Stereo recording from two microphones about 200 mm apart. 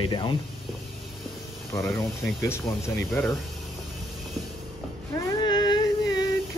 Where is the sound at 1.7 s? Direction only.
15° left (ahead or behind).